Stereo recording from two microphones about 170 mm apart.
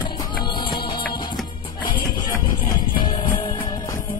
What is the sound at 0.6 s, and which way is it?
Music, 30° left (ahead or behind).